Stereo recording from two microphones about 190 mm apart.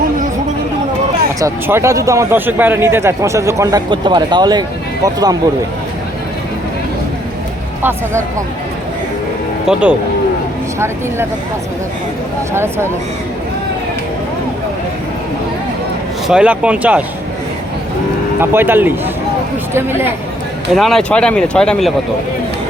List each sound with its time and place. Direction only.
1.4 s speech: 15° right (ahead or behind)
7.8 s speech: 10° right (ahead or behind)
9.7 s speech: 5° right (ahead or behind)
12.5 s speech: 15° right (ahead or behind)
16.2 s speech: 5° right (ahead or behind)
18.3 s speech: 10° right (ahead or behind)
20.7 s speech: centre (ahead or behind)